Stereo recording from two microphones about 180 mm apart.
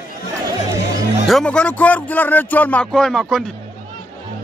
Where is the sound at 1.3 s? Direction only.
5° left (ahead or behind).